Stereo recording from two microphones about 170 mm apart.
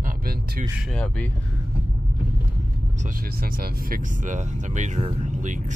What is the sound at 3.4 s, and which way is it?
Speech, 55° right (ahead or behind).